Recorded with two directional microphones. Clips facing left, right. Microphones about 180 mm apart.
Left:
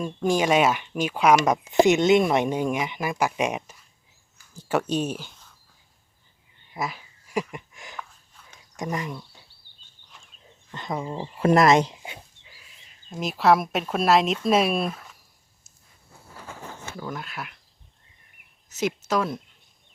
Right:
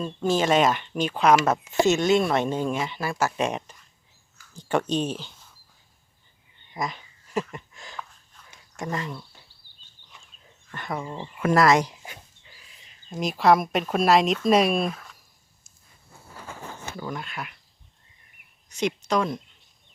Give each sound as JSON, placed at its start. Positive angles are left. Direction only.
{"t": 0.0, "sound": "speech", "side_deg": 15}
{"t": 6.7, "sound": "a sound", "side_deg": 5}
{"t": 8.7, "sound": "speech", "side_deg": 15}
{"t": 10.7, "sound": "speech", "side_deg": 20}
{"t": 11.3, "sound": "speech", "side_deg": 25}
{"t": 12.5, "sound": "speech", "side_deg": 5}
{"t": 17.0, "sound": "speech", "side_deg": 0}
{"t": 18.7, "sound": "speech", "side_deg": 5}